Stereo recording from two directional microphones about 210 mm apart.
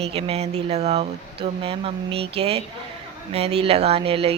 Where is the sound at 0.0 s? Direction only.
30° right (ahead or behind).